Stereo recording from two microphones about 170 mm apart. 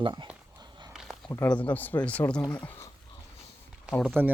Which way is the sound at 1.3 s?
15° left (ahead or behind).